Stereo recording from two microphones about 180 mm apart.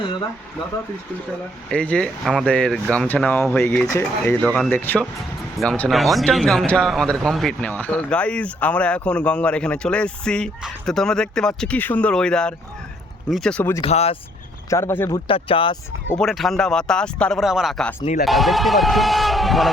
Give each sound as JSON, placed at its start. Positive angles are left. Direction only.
{"t": 1.7, "sound": "speech", "side_deg": 5}
{"t": 4.4, "sound": "speech", "side_deg": 5}
{"t": 13.8, "sound": "speech", "side_deg": 35}
{"t": 14.7, "sound": "speech", "side_deg": 15}
{"t": 15.3, "sound": "speech", "side_deg": 30}
{"t": 16.0, "sound": "speech", "side_deg": 5}